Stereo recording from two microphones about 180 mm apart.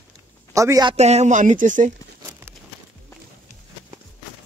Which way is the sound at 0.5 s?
20° right (ahead or behind).